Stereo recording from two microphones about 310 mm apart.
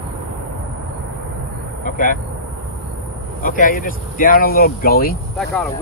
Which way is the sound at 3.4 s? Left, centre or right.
Left.